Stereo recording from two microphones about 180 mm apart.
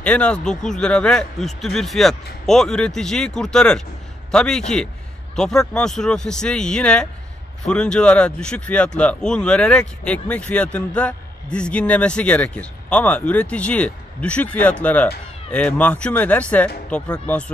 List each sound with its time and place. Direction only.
0.0 s speech: 5° left (ahead or behind)